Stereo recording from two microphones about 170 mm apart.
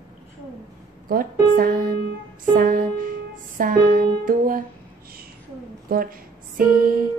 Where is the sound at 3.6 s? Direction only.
55° right (ahead or behind).